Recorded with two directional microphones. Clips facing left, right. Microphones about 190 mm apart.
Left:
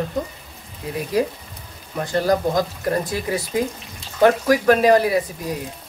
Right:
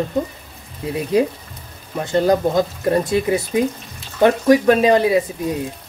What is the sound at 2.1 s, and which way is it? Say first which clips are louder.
Speech: right 3 dB; 25° right (ahead or behind).